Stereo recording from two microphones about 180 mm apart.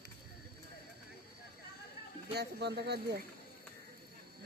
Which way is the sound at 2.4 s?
65° right (ahead or behind).